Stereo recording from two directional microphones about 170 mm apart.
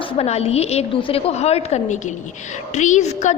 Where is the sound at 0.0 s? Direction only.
35° left (ahead or behind).